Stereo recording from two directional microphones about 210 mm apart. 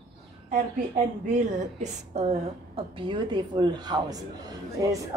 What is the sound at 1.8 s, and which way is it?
A woman's voice, 30° right (ahead or behind).